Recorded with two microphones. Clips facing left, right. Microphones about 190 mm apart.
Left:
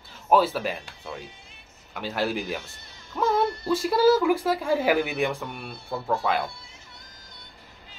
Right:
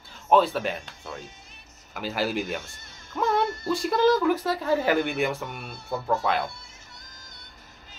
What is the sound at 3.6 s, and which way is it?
Speech, centre (ahead or behind).